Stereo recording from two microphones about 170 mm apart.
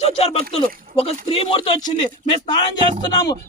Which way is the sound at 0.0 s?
35° left (ahead or behind).